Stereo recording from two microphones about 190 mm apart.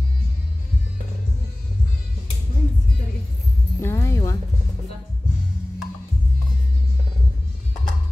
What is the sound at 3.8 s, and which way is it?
Music, 15° left (ahead or behind).